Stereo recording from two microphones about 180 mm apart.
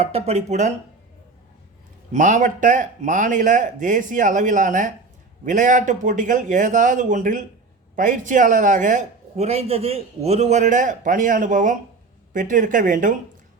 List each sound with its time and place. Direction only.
0.0 s speech: 35° right (ahead or behind)
2.1 s a man's voice: 45° right (ahead or behind)